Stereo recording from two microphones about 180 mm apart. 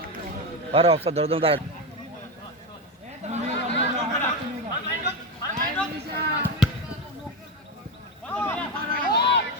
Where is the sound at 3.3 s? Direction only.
40° right (ahead or behind).